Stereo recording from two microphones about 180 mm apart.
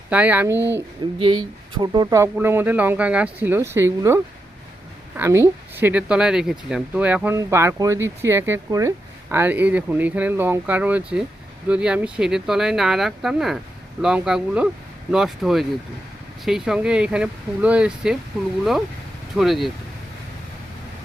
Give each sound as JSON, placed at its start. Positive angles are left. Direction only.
{"t": 0.1, "sound": "speech", "side_deg": -10}
{"t": 1.2, "sound": "speech", "side_deg": -25}
{"t": 19.4, "sound": "speech", "side_deg": 0}